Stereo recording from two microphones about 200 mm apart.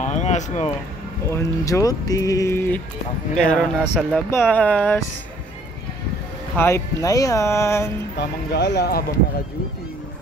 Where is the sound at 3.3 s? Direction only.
5° left (ahead or behind).